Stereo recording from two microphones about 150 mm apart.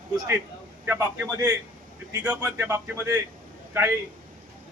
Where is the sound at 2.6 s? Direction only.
15° right (ahead or behind).